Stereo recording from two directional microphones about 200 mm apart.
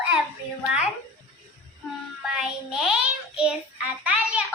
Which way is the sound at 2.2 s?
5° right (ahead or behind).